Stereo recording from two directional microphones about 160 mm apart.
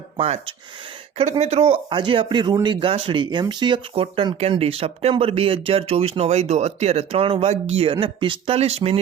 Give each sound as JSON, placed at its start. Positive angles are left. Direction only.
{"t": 0.2, "sound": "speech", "side_deg": -40}